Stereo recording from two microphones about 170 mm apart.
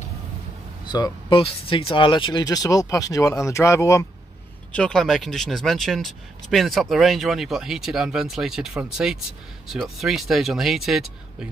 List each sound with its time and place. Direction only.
0.8 s speech: 25° left (ahead or behind)
4.7 s speech: 5° left (ahead or behind)